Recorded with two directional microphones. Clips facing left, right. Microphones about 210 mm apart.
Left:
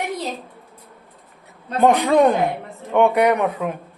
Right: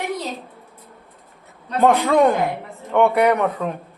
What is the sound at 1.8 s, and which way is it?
Speech, 15° left (ahead or behind).